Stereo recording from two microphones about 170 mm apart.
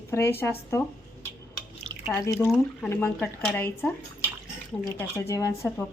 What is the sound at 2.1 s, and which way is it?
A woman's voice, 15° left (ahead or behind).